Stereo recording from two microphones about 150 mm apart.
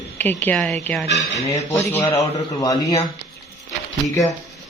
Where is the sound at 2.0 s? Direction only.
25° left (ahead or behind).